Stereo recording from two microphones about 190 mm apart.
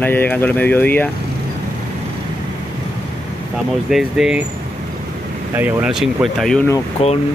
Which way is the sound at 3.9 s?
5° right (ahead or behind).